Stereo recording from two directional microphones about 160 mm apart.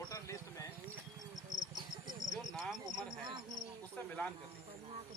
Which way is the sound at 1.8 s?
25° right (ahead or behind).